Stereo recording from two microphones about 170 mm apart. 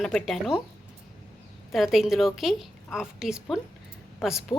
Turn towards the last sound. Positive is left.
turn(degrees=25)  # may be behind; listen again after turning